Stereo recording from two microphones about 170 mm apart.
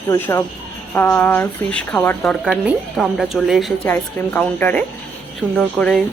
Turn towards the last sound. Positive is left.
turn(degrees=5)  # may be behind; listen again after turning